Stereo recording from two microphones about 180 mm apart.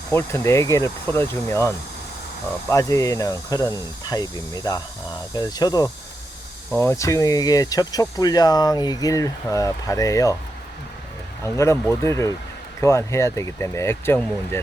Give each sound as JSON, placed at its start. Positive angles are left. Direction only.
{"t": 0.1, "sound": "speech", "side_deg": 15}
{"t": 11.4, "sound": "speech", "side_deg": 15}